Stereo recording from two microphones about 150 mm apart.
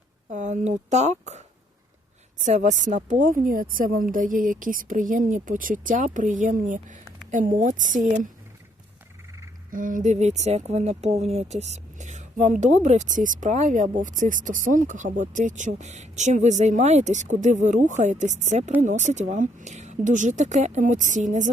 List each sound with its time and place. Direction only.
0.3 s speech: 55° right (ahead or behind)
9.7 s speech: 60° right (ahead or behind)